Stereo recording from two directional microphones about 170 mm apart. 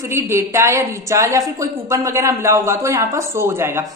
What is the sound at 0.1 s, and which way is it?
A woman's voice, 15° right (ahead or behind).